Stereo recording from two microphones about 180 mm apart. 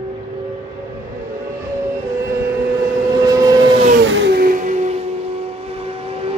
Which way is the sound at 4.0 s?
90° right.